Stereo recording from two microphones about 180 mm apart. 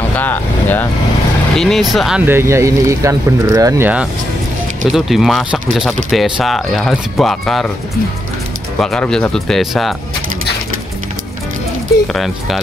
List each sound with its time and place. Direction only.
0.1 s speech: 10° left (ahead or behind)
2.2 s speech: 15° right (ahead or behind); by 7.7 s centre (ahead or behind)
8.7 s speech: 5° left (ahead or behind)
12.1 s speech: centre (ahead or behind)